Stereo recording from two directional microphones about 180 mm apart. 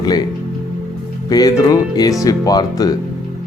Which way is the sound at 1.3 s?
20° left (ahead or behind).